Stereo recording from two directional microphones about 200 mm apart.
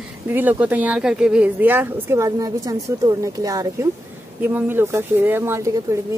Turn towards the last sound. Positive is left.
turn(degrees=-15)  # may be behind; listen again after turning